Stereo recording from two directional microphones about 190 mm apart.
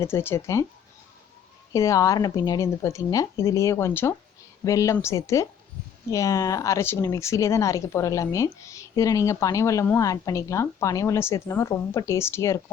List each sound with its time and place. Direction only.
0.0 s speech: 10° left (ahead or behind)
1.7 s speech: 15° left (ahead or behind)